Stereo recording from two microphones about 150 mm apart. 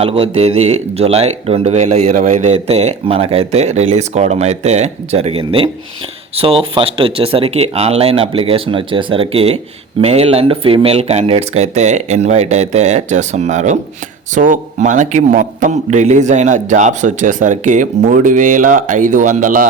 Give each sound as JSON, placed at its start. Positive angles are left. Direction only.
{"t": 0.0, "sound": "speech", "side_deg": -40}